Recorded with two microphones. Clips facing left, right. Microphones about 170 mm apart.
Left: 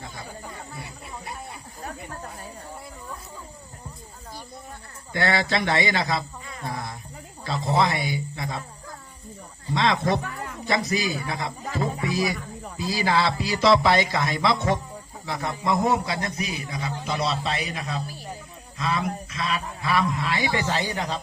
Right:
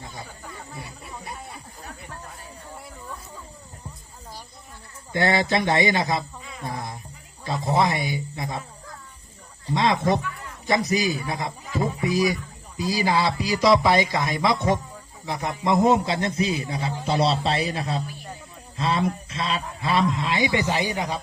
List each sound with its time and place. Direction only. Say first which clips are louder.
5.1 s a man's voice: right 2 dB; 20° right (ahead or behind)
6.4 s a sound: even; centre (ahead or behind)
6.7 s cricket: even; 20° right (ahead or behind)
7.7 s a man's voice: right 1 dB; 20° right (ahead or behind)
9.7 s a man's voice: right 1 dB; 20° right (ahead or behind)
11.8 s a sound: right 3 dB; 20° right (ahead or behind)
12.8 s a man's voice: right 1 dB; 15° right (ahead or behind); by 18.0 s 30° right (ahead or behind)
18.8 s a sound: right 3 dB; 30° right (ahead or behind)
19.8 s a man's voice: right 2 dB; 25° right (ahead or behind)